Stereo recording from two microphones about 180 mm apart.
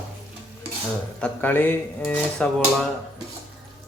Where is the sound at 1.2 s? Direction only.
10° left (ahead or behind).